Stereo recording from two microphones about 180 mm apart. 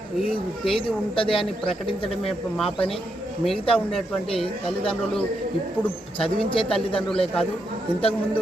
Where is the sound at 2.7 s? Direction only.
30° left (ahead or behind).